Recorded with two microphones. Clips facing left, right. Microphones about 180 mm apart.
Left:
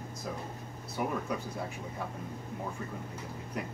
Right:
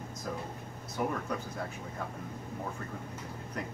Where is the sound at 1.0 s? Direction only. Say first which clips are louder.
Right 1 dB; 5° left (ahead or behind).